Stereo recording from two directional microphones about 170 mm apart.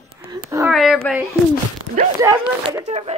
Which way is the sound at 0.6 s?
Centre (ahead or behind).